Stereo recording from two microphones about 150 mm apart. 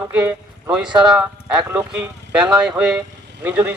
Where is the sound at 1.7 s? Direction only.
5° right (ahead or behind).